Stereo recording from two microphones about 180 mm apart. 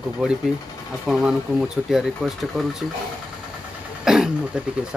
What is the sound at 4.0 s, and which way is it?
Speech, 5° right (ahead or behind).